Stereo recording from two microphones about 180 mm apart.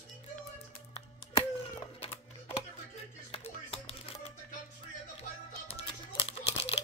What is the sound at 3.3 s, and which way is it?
Music, 35° left (ahead or behind).